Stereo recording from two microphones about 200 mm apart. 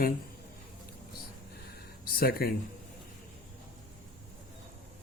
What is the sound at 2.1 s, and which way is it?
Speech, 50° left (ahead or behind).